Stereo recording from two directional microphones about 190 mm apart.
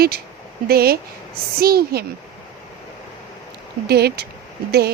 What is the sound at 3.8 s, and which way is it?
Speech, 55° right (ahead or behind).